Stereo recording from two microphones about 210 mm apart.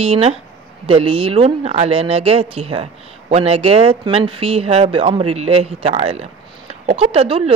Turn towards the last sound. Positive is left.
turn(degrees=-25)  # may be behind; listen again after turning